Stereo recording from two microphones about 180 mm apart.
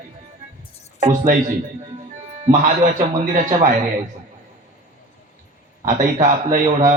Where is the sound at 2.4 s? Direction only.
45° right (ahead or behind).